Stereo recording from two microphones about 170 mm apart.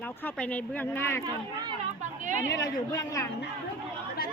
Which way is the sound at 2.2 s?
50° right (ahead or behind).